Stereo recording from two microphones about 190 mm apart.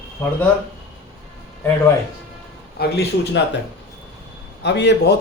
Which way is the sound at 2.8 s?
60° left (ahead or behind).